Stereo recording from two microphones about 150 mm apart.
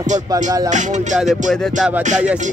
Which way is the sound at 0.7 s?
55° right (ahead or behind).